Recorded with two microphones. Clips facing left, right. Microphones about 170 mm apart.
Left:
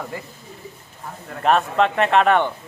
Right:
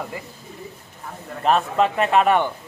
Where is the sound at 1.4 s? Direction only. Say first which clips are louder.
Left 1 dB; centre (ahead or behind).